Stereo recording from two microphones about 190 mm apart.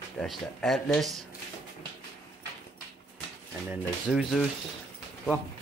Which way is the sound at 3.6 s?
5° right (ahead or behind).